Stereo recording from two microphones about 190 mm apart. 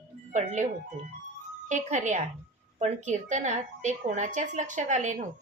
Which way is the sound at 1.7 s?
40° right (ahead or behind).